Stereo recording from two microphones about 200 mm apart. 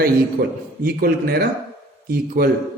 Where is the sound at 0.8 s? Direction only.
50° right (ahead or behind).